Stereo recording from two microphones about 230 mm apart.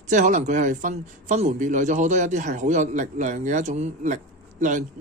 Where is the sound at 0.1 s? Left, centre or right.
Right.